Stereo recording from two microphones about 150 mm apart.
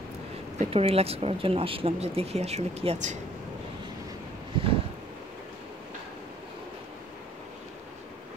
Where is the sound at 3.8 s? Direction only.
30° right (ahead or behind).